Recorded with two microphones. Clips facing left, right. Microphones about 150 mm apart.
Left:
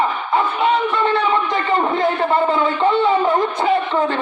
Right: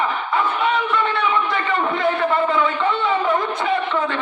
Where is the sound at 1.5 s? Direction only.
30° left (ahead or behind).